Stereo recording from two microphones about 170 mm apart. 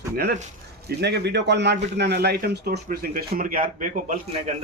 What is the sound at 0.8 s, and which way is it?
A man's voice, 80° right.